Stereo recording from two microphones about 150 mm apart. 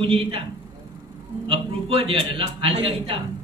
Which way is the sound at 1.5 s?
40° right (ahead or behind).